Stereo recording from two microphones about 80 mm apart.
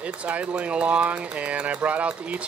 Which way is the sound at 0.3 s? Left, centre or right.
Centre.